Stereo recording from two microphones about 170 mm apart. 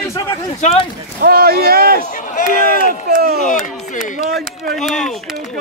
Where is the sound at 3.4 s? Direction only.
50° left (ahead or behind).